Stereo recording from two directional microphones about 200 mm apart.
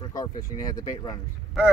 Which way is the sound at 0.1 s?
20° left (ahead or behind).